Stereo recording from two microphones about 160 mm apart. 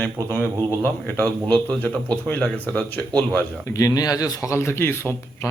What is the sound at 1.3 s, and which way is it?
Speech, 10° left (ahead or behind).